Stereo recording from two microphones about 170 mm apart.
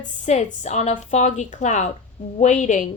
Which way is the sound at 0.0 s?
45° left (ahead or behind).